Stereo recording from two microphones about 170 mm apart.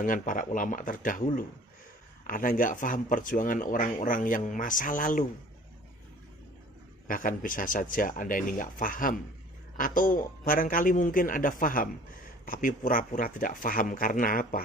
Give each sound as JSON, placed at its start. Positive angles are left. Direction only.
{"t": 0.0, "sound": "speech", "side_deg": 50}
{"t": 7.1, "sound": "speech", "side_deg": 55}